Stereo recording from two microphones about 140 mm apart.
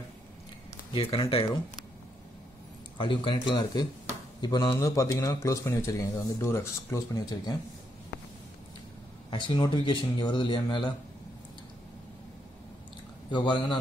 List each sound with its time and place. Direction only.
0.9 s speech: 40° left (ahead or behind)
3.0 s a man's voice: 35° left (ahead or behind)
9.3 s speech: 30° left (ahead or behind)
13.3 s speech: 35° left (ahead or behind)